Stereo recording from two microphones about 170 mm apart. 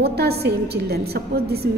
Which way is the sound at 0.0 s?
70° right (ahead or behind).